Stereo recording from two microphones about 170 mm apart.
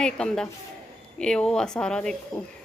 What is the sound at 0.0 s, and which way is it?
Speech, 5° left (ahead or behind).